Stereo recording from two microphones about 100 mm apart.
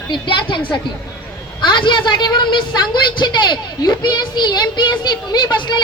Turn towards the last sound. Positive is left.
turn(degrees=50)  # may be behind; listen again after turning